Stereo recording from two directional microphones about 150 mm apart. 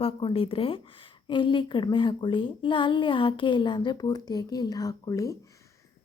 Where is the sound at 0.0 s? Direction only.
35° left (ahead or behind).